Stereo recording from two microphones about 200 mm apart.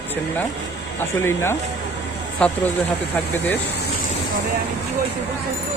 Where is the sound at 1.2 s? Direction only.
10° left (ahead or behind).